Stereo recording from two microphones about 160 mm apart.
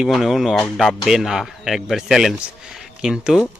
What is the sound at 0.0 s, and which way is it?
Speech, centre (ahead or behind).